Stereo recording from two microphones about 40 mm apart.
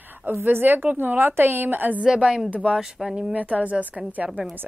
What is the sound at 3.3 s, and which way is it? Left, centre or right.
Speech, right.